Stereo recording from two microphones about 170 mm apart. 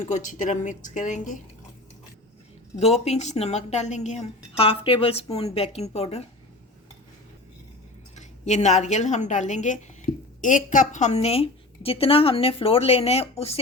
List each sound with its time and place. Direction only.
0.0 s speech: 45° left (ahead or behind)
2.7 s a woman's voice: 40° left (ahead or behind)
8.1 s a woman's voice: 40° left (ahead or behind)